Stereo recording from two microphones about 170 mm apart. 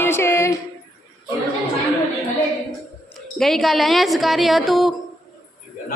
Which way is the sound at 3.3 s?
Centre (ahead or behind).